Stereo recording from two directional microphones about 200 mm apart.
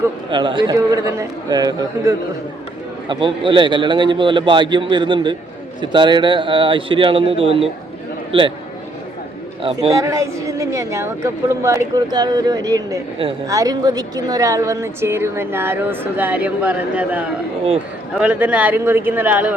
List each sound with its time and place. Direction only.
0.3 s a man's voice: 25° right (ahead or behind)
9.6 s a man's voice: 25° right (ahead or behind)
10.0 s a woman's voice: 15° right (ahead or behind)